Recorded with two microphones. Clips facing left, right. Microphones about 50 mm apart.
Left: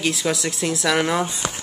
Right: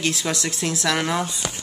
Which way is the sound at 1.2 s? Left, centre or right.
Left.